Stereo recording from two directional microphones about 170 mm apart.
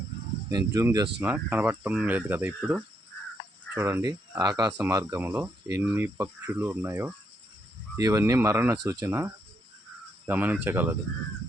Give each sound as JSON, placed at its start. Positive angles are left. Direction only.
{"t": 0.5, "sound": "speech", "side_deg": -20}